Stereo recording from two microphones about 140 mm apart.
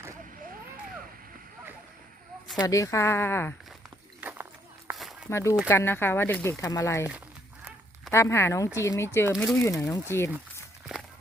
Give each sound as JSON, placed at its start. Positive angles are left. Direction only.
{"t": 2.6, "sound": "speech", "side_deg": 25}
{"t": 4.2, "sound": "run", "side_deg": -10}
{"t": 4.9, "sound": "a sound", "side_deg": 0}
{"t": 5.3, "sound": "speech", "side_deg": 20}
{"t": 8.1, "sound": "speech", "side_deg": 20}
{"t": 10.9, "sound": "walk", "side_deg": -5}